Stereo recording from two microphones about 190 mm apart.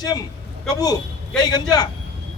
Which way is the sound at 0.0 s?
20° left (ahead or behind).